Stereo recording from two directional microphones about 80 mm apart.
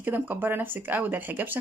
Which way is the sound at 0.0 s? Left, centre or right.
Right.